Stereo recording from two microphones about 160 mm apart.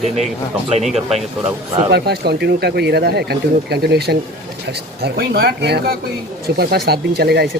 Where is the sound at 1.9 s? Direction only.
85° right.